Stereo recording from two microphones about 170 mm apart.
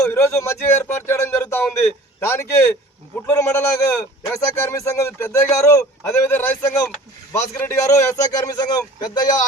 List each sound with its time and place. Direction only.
0.0 s speech: 15° left (ahead or behind)